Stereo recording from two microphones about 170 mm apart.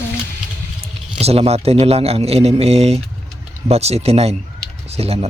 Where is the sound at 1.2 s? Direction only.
35° right (ahead or behind).